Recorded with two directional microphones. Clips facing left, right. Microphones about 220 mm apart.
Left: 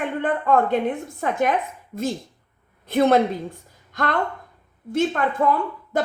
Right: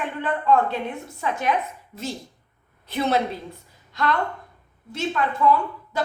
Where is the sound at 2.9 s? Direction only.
50° left (ahead or behind).